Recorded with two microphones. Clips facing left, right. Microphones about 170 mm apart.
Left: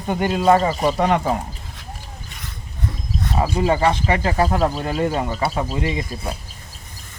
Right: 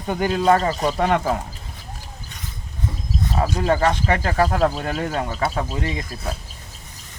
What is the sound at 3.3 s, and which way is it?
Speech, 10° left (ahead or behind).